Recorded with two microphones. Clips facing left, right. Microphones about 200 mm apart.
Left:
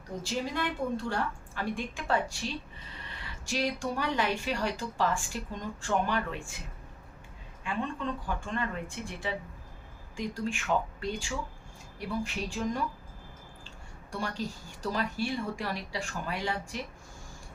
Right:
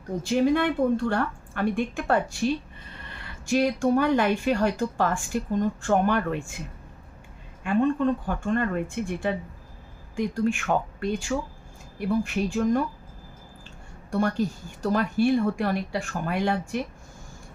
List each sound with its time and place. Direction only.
0.2 s speech: 55° right (ahead or behind)
7.6 s speech: 50° right (ahead or behind)
14.1 s speech: 55° right (ahead or behind)